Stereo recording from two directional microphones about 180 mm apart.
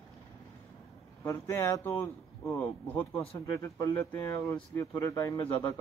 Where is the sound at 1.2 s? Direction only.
15° left (ahead or behind).